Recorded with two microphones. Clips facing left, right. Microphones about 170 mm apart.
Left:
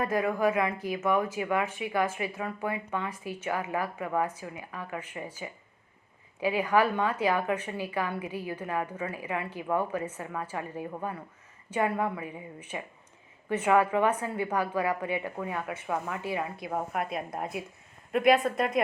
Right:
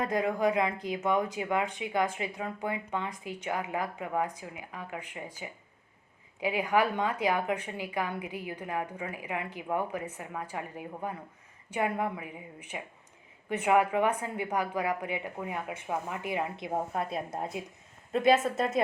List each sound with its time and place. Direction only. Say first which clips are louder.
0.0 s a woman's voice: left 1 dB; 20° right (ahead or behind)